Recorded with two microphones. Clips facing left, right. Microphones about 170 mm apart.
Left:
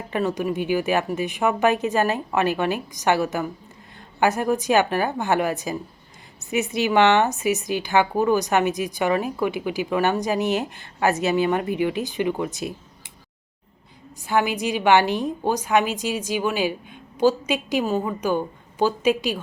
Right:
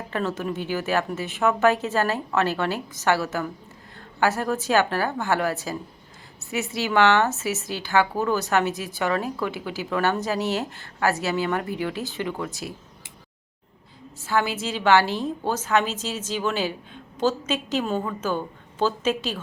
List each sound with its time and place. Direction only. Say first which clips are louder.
0.1 s a woman's voice: left 4 dB; 15° left (ahead or behind)
14.2 s a woman's voice: left 3 dB; 15° left (ahead or behind)